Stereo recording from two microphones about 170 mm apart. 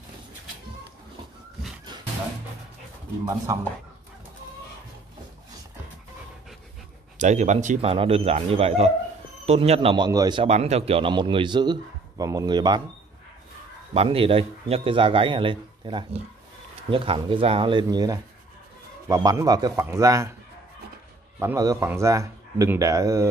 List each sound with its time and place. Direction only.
3.5 s a man's voice: 20° right (ahead or behind)
7.2 s a man's voice: 45° right (ahead or behind); by 10.4 s 25° right (ahead or behind)
10.4 s a man's voice: 40° right (ahead or behind)
13.9 s a man's voice: 30° right (ahead or behind)
21.4 s a man's voice: 20° right (ahead or behind)